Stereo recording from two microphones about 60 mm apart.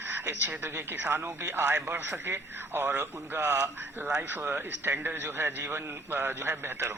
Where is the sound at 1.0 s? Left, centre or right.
Right.